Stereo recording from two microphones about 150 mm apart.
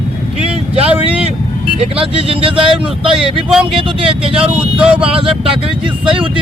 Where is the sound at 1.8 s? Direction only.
40° right (ahead or behind).